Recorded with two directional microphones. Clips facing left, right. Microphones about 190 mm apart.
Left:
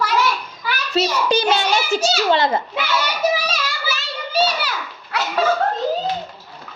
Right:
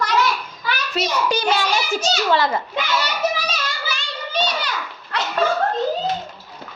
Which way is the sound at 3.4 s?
5° left (ahead or behind).